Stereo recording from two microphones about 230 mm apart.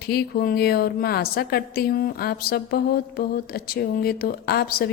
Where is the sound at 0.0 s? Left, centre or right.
Left.